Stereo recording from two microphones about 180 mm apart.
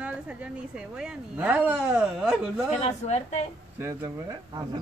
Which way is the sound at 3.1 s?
40° left (ahead or behind).